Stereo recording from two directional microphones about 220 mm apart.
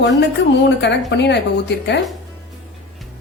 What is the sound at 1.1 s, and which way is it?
Speech, 50° left (ahead or behind).